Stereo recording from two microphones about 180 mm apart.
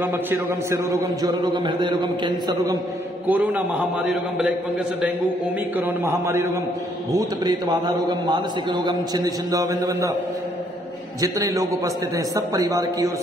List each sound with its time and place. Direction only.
0.0 s a man's voice: 10° right (ahead or behind)
5.8 s a man's voice: 15° right (ahead or behind)
11.1 s a man's voice: 20° right (ahead or behind)